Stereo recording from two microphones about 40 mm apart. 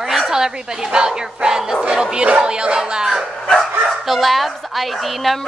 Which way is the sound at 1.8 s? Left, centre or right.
Centre.